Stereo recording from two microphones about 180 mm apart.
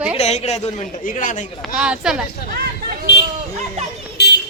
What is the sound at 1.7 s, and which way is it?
Speech, 5° right (ahead or behind).